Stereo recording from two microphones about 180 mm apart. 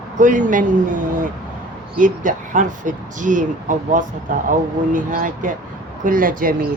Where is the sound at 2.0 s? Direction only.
45° right (ahead or behind).